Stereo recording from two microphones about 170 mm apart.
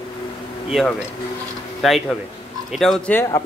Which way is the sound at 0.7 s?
Centre (ahead or behind).